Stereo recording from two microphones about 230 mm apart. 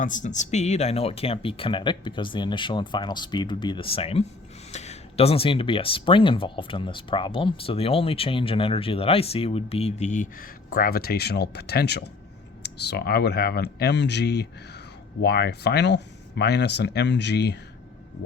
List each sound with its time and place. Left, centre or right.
0.0 s speech: left